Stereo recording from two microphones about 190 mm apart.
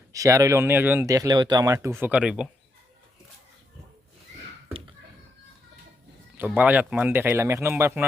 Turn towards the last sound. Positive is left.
turn(degrees=-10)  # may be behind; listen again after turning